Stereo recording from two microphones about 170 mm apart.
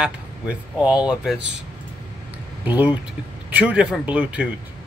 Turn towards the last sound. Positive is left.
turn(degrees=-5)  # may be behind; listen again after turning